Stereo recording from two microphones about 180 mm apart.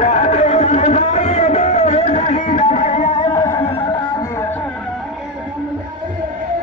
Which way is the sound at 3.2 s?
25° left (ahead or behind).